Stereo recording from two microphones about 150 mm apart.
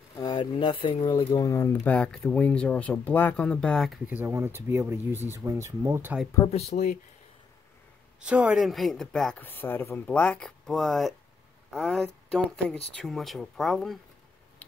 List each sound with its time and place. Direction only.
0.1 s speech: 25° left (ahead or behind)
1.3 s speech: 20° left (ahead or behind); by 4.0 s 5° left (ahead or behind)
4.1 s speech: 15° right (ahead or behind)
6.7 s speech: 55° left (ahead or behind)
8.2 s speech: 10° right (ahead or behind)